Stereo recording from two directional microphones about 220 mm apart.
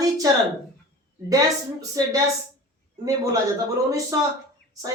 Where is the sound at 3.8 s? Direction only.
15° right (ahead or behind).